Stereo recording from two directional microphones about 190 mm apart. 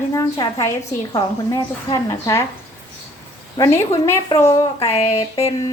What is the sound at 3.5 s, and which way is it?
A woman's voice, 15° left (ahead or behind).